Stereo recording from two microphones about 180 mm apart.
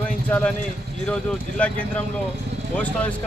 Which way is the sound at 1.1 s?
5° left (ahead or behind).